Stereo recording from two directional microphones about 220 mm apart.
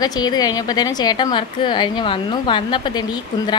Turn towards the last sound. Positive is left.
turn(degrees=20)  # may be behind; listen again after turning